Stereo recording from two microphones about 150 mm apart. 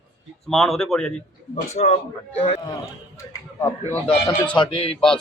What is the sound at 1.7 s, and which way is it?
Speech, 50° left (ahead or behind).